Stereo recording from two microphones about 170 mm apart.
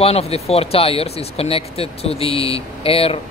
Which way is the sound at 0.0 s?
35° left (ahead or behind).